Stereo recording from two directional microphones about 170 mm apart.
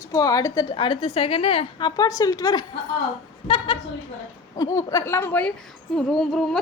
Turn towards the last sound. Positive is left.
turn(degrees=0)  # may be behind; listen again after turning